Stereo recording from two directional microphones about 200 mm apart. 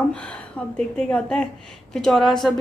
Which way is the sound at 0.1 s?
5° left (ahead or behind).